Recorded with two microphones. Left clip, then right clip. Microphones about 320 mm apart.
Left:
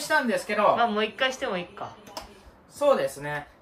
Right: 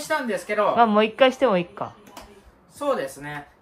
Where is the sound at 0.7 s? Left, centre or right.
Centre.